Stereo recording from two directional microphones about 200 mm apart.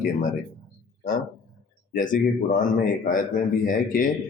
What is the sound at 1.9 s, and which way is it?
Speech, 40° left (ahead or behind).